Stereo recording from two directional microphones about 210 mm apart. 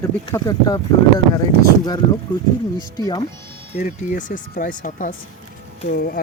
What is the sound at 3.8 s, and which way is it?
Speech, 40° left (ahead or behind).